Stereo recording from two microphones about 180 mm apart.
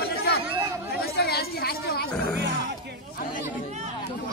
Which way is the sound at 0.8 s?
60° left (ahead or behind).